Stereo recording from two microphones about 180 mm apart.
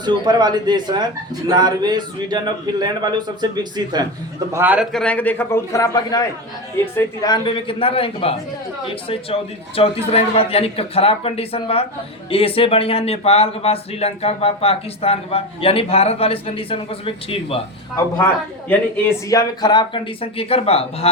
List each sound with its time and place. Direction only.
0.0 s a man's voice: 25° right (ahead or behind)
4.5 s a man's voice: 10° right (ahead or behind)
4.9 s a man's voice: 5° left (ahead or behind); by 17.6 s 30° left (ahead or behind)
18.7 s speech: 15° left (ahead or behind); by 21.1 s 35° left (ahead or behind)